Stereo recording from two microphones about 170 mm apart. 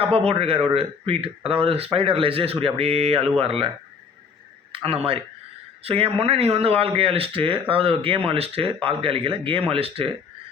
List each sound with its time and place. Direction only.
0.0 s speech: 35° right (ahead or behind)
4.7 s speech: 35° right (ahead or behind)